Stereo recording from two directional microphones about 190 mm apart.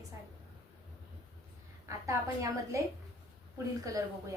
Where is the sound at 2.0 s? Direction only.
15° right (ahead or behind).